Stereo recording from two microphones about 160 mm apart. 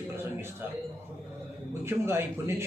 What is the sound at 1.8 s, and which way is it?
Speech, 15° right (ahead or behind).